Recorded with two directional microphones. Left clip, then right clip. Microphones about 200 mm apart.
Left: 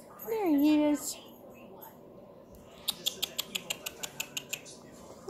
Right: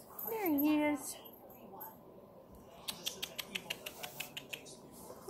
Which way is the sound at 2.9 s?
20° left (ahead or behind).